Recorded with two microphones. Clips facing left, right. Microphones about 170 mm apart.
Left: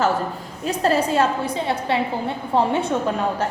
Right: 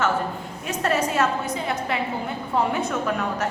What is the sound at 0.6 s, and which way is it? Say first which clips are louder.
A woman's voice: left 4 dB; 30° left (ahead or behind).